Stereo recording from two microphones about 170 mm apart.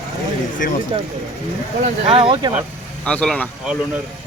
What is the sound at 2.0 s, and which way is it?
Speech, 30° right (ahead or behind).